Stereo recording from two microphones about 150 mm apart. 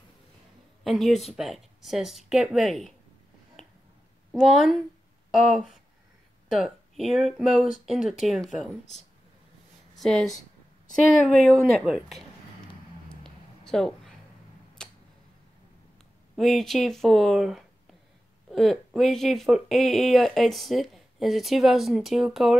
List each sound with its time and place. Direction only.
0.8 s speech: centre (ahead or behind)
4.4 s speech: centre (ahead or behind)
9.9 s speech: centre (ahead or behind)
13.2 s a sound: 5° left (ahead or behind)
14.8 s tick-tock: 5° left (ahead or behind)
16.3 s speech: centre (ahead or behind)